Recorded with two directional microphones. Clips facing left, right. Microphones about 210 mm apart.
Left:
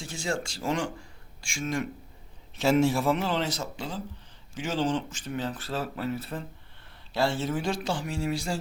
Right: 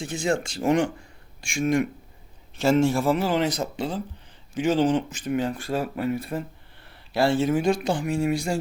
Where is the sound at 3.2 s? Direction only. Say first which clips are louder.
Right 6 dB; 10° right (ahead or behind).